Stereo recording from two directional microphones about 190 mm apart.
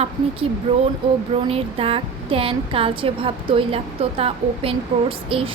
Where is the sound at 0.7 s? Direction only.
30° right (ahead or behind).